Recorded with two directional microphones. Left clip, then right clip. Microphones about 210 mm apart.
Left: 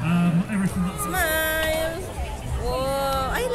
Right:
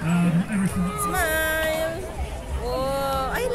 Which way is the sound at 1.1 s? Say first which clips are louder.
Left 1 dB; centre (ahead or behind).